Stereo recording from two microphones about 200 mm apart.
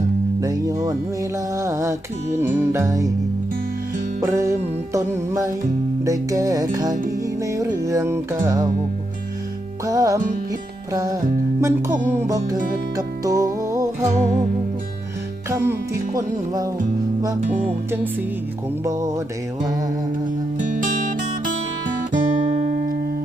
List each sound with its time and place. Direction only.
0.4 s music: 15° right (ahead or behind)
4.2 s music: 15° right (ahead or behind)
9.8 s music: 15° right (ahead or behind)
12.5 s music: 45° right (ahead or behind)
13.0 s music: 15° right (ahead or behind)
14.0 s music: 35° right (ahead or behind)
15.4 s music: 15° right (ahead or behind)
17.4 s music: 35° right (ahead or behind)
18.9 s music: 15° right (ahead or behind)
20.6 s music: 40° right (ahead or behind)